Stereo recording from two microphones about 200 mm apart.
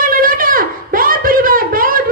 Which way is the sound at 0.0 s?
45° right (ahead or behind).